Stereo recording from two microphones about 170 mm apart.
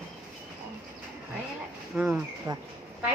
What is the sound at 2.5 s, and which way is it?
Speech, 20° right (ahead or behind).